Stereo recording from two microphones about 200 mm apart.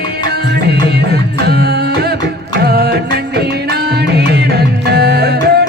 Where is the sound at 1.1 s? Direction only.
55° right (ahead or behind).